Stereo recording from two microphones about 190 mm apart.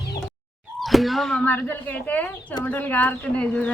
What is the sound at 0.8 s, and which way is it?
A woman's voice, centre (ahead or behind).